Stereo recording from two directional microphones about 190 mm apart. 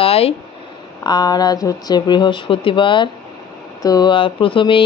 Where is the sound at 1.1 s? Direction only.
20° left (ahead or behind).